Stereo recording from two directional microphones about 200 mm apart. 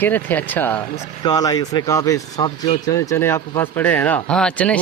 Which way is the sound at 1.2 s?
20° left (ahead or behind).